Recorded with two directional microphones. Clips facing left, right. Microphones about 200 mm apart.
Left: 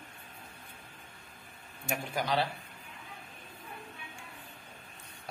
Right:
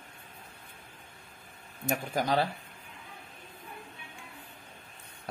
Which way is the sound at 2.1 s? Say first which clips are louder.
Right 3 dB; 45° right (ahead or behind).